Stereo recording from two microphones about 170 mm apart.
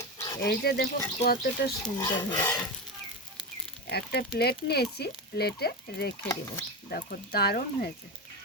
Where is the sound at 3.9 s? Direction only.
70° left (ahead or behind).